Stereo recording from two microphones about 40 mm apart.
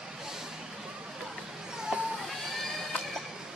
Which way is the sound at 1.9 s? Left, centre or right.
Right.